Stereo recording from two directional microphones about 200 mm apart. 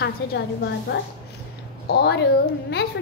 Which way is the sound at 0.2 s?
60° left (ahead or behind).